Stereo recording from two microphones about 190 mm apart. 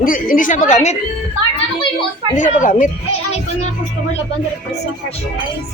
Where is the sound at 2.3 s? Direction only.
40° left (ahead or behind).